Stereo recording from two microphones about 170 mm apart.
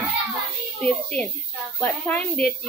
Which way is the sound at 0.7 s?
5° left (ahead or behind).